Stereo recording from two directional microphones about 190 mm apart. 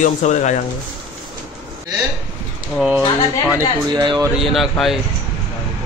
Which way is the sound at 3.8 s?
25° right (ahead or behind).